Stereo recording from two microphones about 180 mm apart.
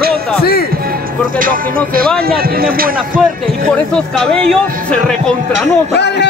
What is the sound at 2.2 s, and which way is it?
Speech, 55° right (ahead or behind).